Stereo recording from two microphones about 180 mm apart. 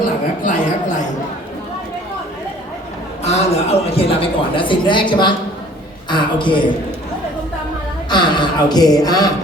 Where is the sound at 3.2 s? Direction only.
35° left (ahead or behind).